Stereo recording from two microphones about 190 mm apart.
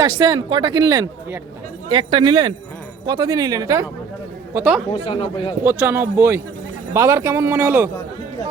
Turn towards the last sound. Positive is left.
turn(degrees=-15)  # may be behind; listen again after turning